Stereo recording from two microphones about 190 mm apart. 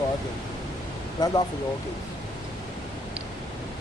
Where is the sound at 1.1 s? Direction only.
20° left (ahead or behind).